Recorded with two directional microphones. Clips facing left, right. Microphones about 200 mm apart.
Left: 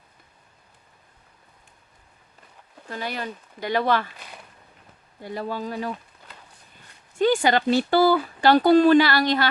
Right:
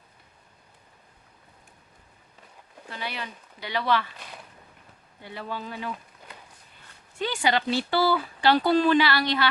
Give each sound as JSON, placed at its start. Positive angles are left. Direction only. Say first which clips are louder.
{"t": 2.9, "sound": "speech", "louder": "left 5 dB", "side_deg": 45}
{"t": 5.2, "sound": "speech", "louder": "left 6 dB", "side_deg": 40}
{"t": 7.2, "sound": "speech", "louder": "left 6 dB", "side_deg": 45}